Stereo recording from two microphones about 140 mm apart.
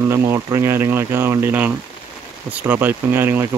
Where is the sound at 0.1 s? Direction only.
20° right (ahead or behind).